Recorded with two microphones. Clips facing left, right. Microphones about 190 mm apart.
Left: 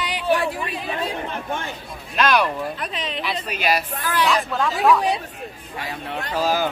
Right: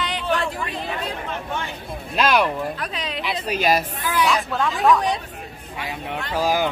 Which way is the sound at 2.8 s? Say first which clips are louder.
Even; centre (ahead or behind).